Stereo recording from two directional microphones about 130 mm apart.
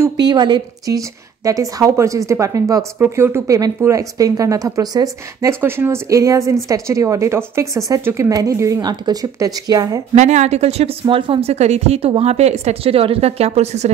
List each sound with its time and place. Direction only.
0.2 s a woman's voice: 35° right (ahead or behind)
10.1 s a woman's voice: 60° right (ahead or behind)